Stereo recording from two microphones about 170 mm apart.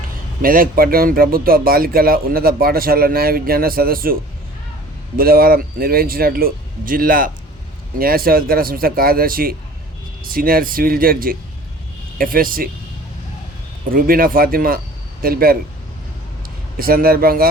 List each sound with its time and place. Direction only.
0.4 s speech: 55° right (ahead or behind)
13.9 s speech: 60° right (ahead or behind)
16.7 s speech: 60° right (ahead or behind)